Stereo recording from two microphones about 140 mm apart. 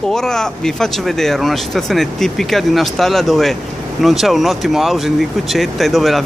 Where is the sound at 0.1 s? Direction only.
5° left (ahead or behind).